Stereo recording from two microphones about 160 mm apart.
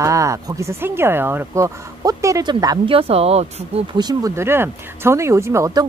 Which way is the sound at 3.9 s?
25° right (ahead or behind).